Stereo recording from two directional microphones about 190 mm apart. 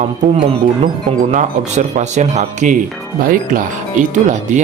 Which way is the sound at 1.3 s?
40° right (ahead or behind).